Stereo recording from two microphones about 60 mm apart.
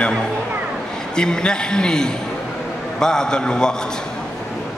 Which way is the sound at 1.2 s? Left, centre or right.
Centre.